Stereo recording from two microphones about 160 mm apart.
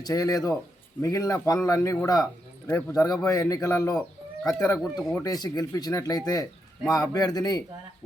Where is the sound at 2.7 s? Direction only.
10° left (ahead or behind).